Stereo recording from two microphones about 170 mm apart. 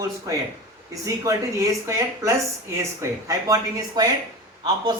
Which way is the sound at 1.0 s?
20° right (ahead or behind).